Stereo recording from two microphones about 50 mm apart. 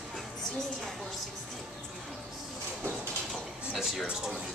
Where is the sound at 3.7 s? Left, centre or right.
Centre.